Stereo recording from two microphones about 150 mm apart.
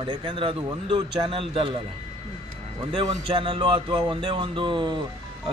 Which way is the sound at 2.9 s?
35° right (ahead or behind).